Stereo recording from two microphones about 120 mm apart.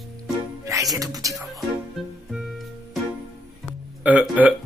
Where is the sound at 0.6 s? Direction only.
25° right (ahead or behind).